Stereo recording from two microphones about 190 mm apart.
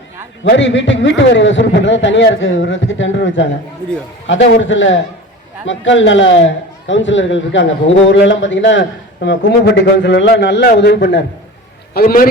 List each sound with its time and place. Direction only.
0.4 s a man's voice: 75° left (ahead or behind)
11.9 s a man's voice: 50° left (ahead or behind)